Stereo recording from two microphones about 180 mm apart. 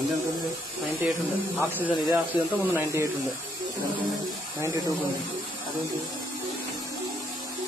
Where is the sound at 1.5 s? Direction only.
10° right (ahead or behind).